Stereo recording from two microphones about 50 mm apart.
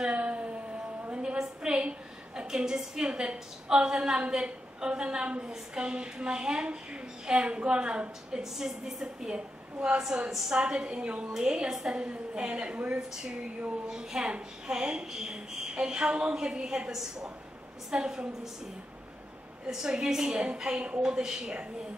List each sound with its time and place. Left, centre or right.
0.0 s a sound: right
1.4 s a woman's voice: centre
8.4 s a woman's voice: centre
13.1 s a woman's voice: centre
19.7 s a woman's voice: centre